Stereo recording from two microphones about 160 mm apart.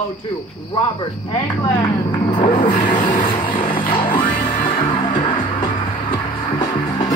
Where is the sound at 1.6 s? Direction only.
25° left (ahead or behind).